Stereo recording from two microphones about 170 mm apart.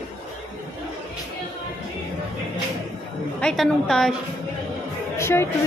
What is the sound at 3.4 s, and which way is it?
Speech, 5° left (ahead or behind).